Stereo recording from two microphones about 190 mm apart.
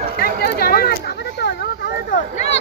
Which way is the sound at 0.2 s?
55° left (ahead or behind).